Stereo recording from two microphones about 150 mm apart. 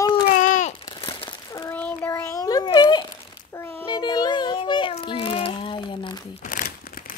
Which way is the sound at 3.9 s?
30° left (ahead or behind).